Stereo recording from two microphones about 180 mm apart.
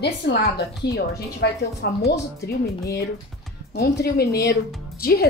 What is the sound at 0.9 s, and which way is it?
A woman's voice, 65° left (ahead or behind).